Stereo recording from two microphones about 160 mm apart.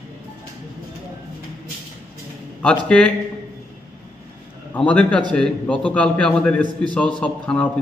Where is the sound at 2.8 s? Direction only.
5° left (ahead or behind).